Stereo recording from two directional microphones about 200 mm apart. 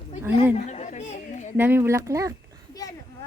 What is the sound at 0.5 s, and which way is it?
Speech, 35° left (ahead or behind).